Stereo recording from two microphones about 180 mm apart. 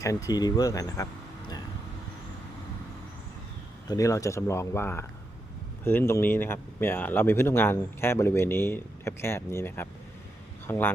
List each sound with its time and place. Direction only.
0.0 s speech: 20° left (ahead or behind)
3.8 s speech: 20° left (ahead or behind)